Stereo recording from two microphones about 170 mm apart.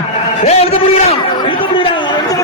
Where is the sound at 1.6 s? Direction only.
30° left (ahead or behind).